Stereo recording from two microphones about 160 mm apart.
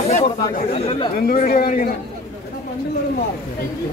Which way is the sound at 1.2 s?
65° left (ahead or behind).